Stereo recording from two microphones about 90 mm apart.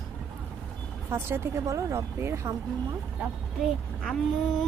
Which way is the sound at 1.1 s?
25° right (ahead or behind).